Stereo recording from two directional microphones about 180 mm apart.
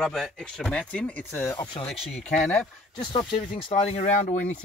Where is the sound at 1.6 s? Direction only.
25° left (ahead or behind).